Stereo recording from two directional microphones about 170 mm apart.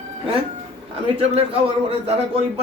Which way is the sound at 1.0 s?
35° right (ahead or behind).